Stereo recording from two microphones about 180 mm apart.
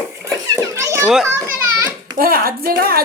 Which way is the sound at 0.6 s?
15° right (ahead or behind).